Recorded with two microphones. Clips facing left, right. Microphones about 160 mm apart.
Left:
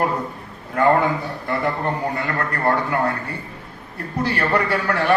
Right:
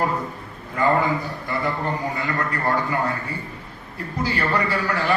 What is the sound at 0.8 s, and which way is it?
A man's voice, 60° left (ahead or behind).